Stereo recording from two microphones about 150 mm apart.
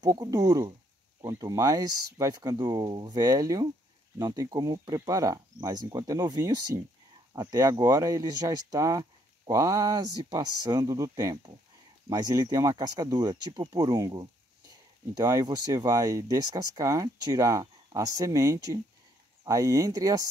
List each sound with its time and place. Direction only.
0.0 s speech: 25° right (ahead or behind)